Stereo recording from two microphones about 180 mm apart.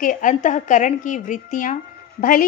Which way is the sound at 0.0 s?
45° left (ahead or behind).